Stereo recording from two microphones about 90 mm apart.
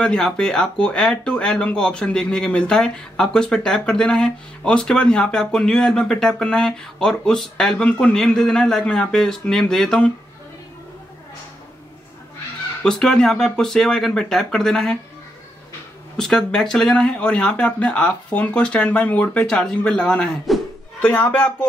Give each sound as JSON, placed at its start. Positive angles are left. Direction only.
{"t": 0.0, "sound": "speech", "side_deg": 10}
{"t": 12.8, "sound": "speech", "side_deg": 5}
{"t": 16.2, "sound": "speech", "side_deg": 5}
{"t": 19.4, "sound": "speech", "side_deg": 5}
{"t": 21.0, "sound": "speech", "side_deg": 15}